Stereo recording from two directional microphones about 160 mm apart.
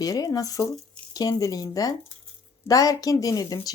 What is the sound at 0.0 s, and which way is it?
Speech, 20° left (ahead or behind).